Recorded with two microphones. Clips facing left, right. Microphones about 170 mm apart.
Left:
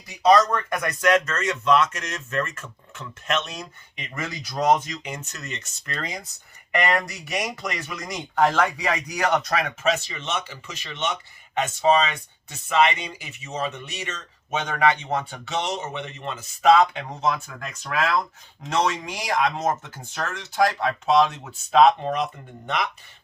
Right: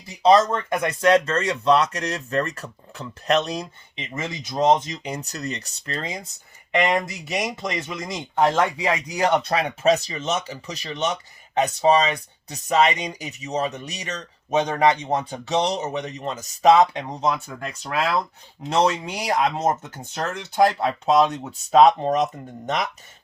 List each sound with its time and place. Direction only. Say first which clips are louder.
0.2 s speech: right 1 dB; 25° right (ahead or behind)
19.8 s speech: right 3 dB; 20° right (ahead or behind); by 22.9 s 40° right (ahead or behind)